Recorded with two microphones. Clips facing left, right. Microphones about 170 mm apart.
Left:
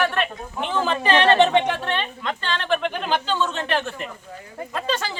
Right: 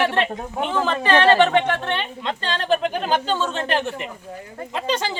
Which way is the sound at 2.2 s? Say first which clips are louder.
Right 1 dB; 30° right (ahead or behind).